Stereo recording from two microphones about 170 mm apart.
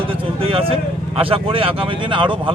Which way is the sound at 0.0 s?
30° right (ahead or behind).